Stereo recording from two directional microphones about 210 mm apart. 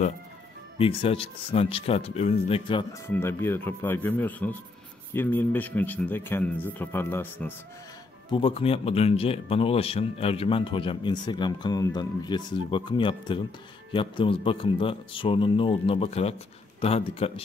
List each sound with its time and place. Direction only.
0.7 s speech: 25° left (ahead or behind)
3.1 s speech: 10° left (ahead or behind)
8.3 s speech: 25° left (ahead or behind)